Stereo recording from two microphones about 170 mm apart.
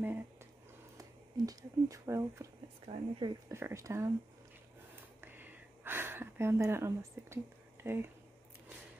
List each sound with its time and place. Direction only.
0.9 s speech: 20° right (ahead or behind)
2.9 s speech: 30° right (ahead or behind)
3.4 s speech: 15° right (ahead or behind)
5.2 s a sound: 10° right (ahead or behind)
7.8 s speech: 15° right (ahead or behind)